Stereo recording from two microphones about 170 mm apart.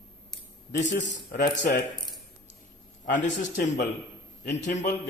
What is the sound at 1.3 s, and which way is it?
Speech, 55° left (ahead or behind).